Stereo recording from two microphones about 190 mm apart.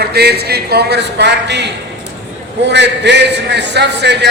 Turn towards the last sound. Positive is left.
turn(degrees=-65)  # may be behind; listen again after turning